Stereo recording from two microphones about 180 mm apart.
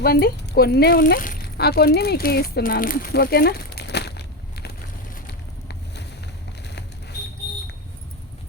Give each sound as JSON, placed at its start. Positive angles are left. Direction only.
{"t": 0.0, "sound": "speech", "side_deg": 60}
{"t": 5.6, "sound": "boat", "side_deg": 70}